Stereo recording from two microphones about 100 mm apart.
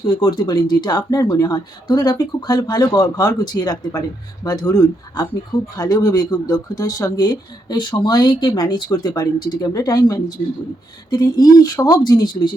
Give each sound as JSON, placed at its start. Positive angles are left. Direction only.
{"t": 0.0, "sound": "speech", "side_deg": 45}